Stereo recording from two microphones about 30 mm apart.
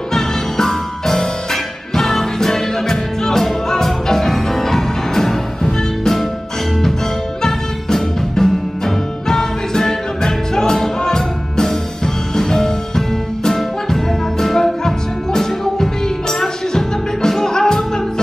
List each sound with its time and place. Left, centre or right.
0.1 s music: centre
7.4 s music: centre